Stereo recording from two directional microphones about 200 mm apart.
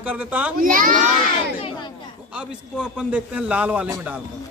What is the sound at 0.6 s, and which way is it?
Speech, 45° right (ahead or behind).